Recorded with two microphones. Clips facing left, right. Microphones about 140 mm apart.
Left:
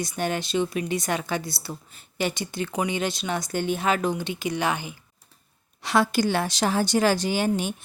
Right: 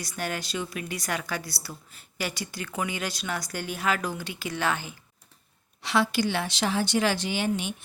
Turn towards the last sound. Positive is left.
turn(degrees=40)  # may be behind; listen again after turning